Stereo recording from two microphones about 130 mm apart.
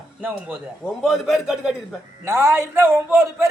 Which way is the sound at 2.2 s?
20° right (ahead or behind).